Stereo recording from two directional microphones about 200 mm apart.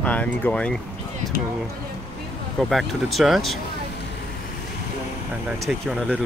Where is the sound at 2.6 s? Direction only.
Centre (ahead or behind).